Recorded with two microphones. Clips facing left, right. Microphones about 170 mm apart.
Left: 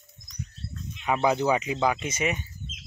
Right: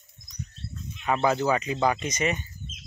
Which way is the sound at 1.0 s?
10° left (ahead or behind).